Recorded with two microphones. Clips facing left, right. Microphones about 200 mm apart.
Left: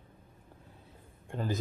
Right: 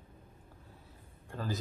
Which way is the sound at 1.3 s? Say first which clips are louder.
Left 4 dB; 20° left (ahead or behind).